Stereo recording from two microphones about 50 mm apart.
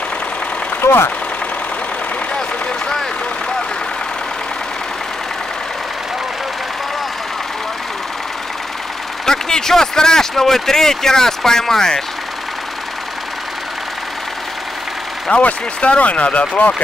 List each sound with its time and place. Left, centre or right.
0.7 s engine: left
9.2 s speech: centre
15.4 s speech: left